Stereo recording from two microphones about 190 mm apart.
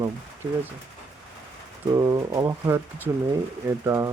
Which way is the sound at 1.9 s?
15° right (ahead or behind).